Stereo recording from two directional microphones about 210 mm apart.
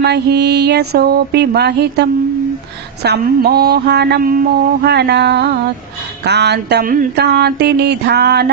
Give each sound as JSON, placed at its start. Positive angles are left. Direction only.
{"t": 0.0, "sound": "mantra", "side_deg": -50}